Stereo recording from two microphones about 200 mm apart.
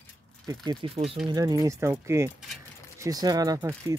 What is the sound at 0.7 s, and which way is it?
Speech, 25° right (ahead or behind).